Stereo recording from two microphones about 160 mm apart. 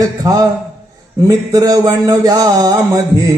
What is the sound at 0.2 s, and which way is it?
Music, 25° right (ahead or behind).